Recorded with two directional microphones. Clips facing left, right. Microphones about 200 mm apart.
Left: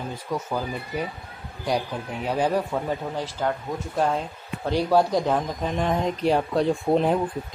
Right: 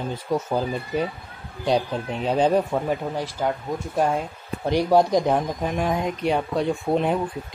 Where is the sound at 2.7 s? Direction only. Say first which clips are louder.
Right 3 dB; 10° right (ahead or behind).